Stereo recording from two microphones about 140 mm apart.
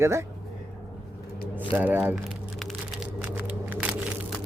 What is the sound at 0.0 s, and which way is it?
Speech, 20° right (ahead or behind).